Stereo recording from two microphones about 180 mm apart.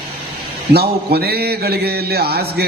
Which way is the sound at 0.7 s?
60° right (ahead or behind).